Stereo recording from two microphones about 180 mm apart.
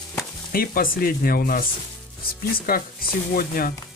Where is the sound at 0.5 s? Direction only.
55° left (ahead or behind).